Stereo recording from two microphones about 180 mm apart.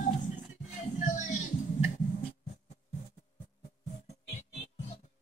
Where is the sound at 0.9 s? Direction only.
45° left (ahead or behind).